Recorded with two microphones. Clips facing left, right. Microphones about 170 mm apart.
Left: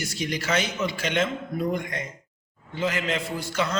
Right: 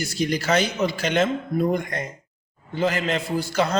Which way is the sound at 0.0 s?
35° right (ahead or behind).